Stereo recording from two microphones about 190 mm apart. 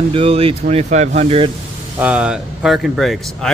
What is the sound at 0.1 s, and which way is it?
Speech, 30° right (ahead or behind).